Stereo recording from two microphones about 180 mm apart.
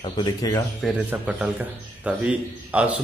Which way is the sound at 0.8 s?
5° right (ahead or behind).